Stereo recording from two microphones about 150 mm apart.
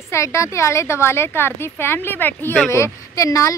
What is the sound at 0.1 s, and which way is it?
Speech, 20° left (ahead or behind).